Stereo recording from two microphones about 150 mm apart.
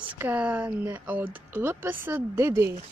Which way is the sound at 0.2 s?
10° right (ahead or behind).